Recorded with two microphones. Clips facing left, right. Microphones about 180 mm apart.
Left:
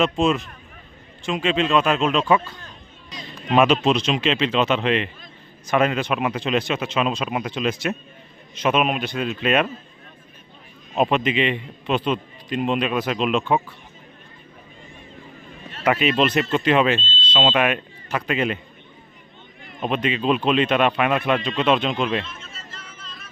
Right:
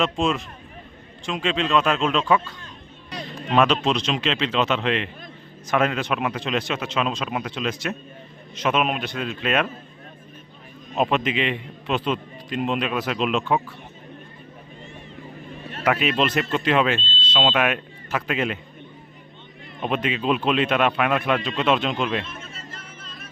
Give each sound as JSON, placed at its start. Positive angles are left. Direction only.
{"t": 0.0, "sound": "a man's voice", "side_deg": 0}
{"t": 10.9, "sound": "a man's voice", "side_deg": 0}
{"t": 15.8, "sound": "a man's voice", "side_deg": 0}
{"t": 19.9, "sound": "a man's voice", "side_deg": -5}
{"t": 22.2, "sound": "a sound", "side_deg": -55}